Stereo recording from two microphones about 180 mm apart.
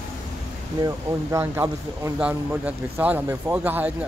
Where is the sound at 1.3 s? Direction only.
15° right (ahead or behind).